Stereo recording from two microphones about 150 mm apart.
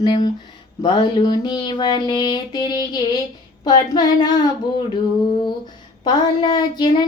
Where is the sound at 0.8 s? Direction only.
30° left (ahead or behind).